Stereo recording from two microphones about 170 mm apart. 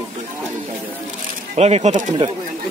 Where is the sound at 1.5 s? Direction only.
40° right (ahead or behind).